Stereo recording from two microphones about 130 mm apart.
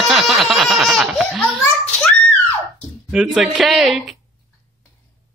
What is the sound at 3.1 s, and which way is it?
Speech, 5° right (ahead or behind).